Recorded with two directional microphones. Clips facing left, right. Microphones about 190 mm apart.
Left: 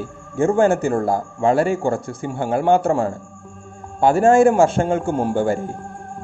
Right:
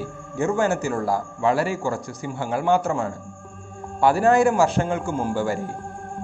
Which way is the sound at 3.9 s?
25° left (ahead or behind).